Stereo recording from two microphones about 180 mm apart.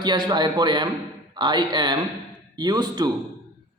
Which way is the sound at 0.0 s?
25° right (ahead or behind).